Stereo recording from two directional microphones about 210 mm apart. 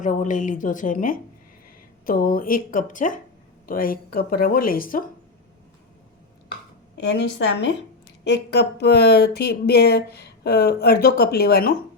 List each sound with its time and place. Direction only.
0.0 s speech: 35° left (ahead or behind)
6.9 s a woman's voice: 55° left (ahead or behind)